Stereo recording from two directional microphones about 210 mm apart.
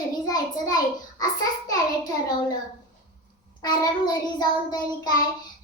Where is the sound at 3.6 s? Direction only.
20° left (ahead or behind).